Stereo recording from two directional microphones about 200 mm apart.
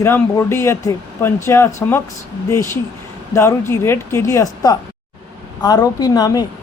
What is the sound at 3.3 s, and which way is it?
A woman's voice, 15° left (ahead or behind).